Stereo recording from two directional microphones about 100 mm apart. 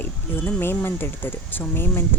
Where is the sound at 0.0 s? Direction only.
20° left (ahead or behind).